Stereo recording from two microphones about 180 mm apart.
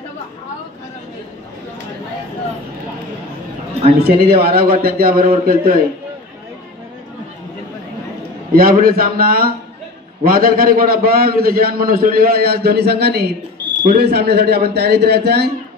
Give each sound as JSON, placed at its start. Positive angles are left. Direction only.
{"t": 4.0, "sound": "a man's voice", "side_deg": -60}
{"t": 8.5, "sound": "a man's voice", "side_deg": -55}